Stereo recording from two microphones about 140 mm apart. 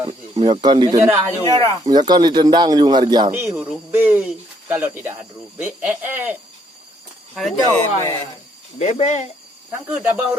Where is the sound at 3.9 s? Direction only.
15° right (ahead or behind).